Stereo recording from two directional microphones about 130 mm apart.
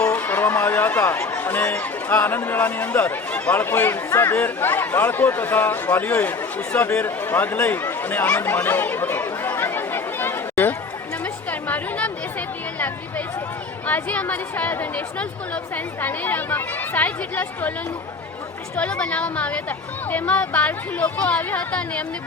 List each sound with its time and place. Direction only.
0.1 s speech: 15° left (ahead or behind)
11.7 s chatter: 10° left (ahead or behind)
13.8 s speech: 10° left (ahead or behind)
18.8 s speech: 10° left (ahead or behind)